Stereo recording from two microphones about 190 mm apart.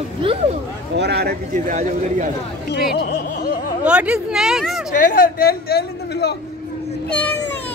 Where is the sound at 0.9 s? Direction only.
60° right (ahead or behind); by 2.3 s 40° right (ahead or behind).